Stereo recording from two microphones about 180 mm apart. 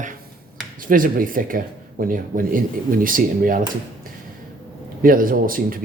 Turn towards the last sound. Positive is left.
turn(degrees=-50)  # may be behind; listen again after turning